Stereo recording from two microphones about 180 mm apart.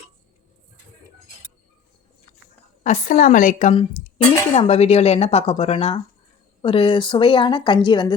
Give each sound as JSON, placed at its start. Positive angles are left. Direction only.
{"t": 2.8, "sound": "a woman's voice", "side_deg": 45}